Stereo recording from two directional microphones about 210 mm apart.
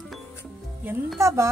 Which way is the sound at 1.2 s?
15° right (ahead or behind).